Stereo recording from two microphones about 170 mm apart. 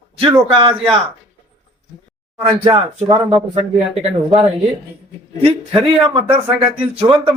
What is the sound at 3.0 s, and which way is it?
Speech, 30° right (ahead or behind).